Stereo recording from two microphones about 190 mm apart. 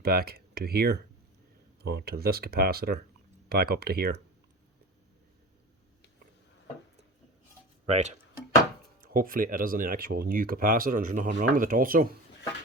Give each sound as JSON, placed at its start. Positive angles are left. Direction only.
{"t": 0.0, "sound": "speech", "side_deg": -55}
{"t": 7.9, "sound": "speech", "side_deg": -35}
{"t": 9.1, "sound": "speech", "side_deg": -45}